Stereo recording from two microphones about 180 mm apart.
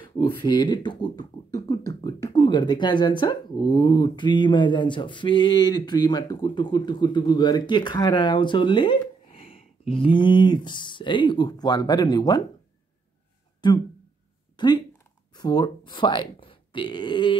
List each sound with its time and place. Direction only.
0.4 s speech: 25° left (ahead or behind)
13.6 s speech: 25° left (ahead or behind)